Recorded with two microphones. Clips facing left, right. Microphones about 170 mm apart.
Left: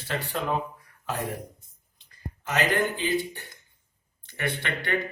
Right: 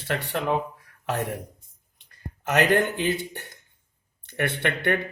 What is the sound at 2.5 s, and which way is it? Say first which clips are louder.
A man's voice: right 4 dB; 60° right (ahead or behind).